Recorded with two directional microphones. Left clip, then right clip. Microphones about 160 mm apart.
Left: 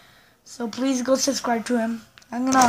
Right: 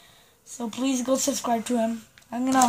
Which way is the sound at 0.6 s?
Centre (ahead or behind).